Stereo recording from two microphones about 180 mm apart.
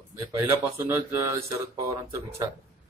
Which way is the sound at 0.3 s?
15° right (ahead or behind).